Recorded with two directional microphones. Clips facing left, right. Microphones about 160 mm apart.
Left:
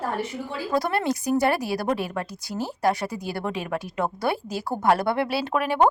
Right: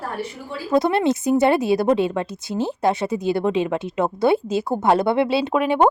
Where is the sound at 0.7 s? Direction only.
20° right (ahead or behind).